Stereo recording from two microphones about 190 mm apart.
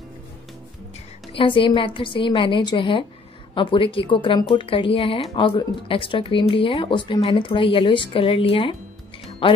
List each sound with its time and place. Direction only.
1.3 s speech: 30° left (ahead or behind)